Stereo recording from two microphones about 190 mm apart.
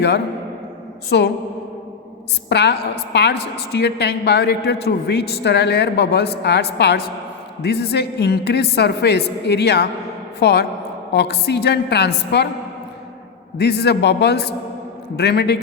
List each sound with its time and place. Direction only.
1.1 s a woman's voice: 65° left (ahead or behind)
2.5 s a woman's voice: 60° left (ahead or behind)
13.6 s a woman's voice: 60° left (ahead or behind)